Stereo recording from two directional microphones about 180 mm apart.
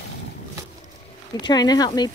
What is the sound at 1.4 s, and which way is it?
Speech, 25° left (ahead or behind).